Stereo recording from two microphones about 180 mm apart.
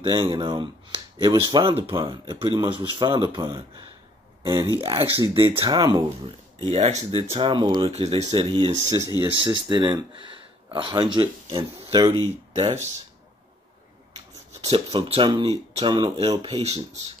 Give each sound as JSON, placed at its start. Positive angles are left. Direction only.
{"t": 0.0, "sound": "speech", "side_deg": -30}
{"t": 7.9, "sound": "speech", "side_deg": -35}
{"t": 14.1, "sound": "speech", "side_deg": -30}